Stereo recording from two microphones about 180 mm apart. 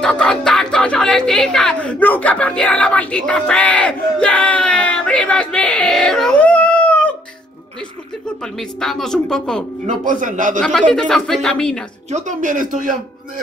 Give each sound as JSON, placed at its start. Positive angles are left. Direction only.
{"t": 0.0, "sound": "speech", "side_deg": 5}
{"t": 8.5, "sound": "speech", "side_deg": 0}
{"t": 9.8, "sound": "speech", "side_deg": -45}
{"t": 10.6, "sound": "speech", "side_deg": 5}
{"t": 12.1, "sound": "speech", "side_deg": -45}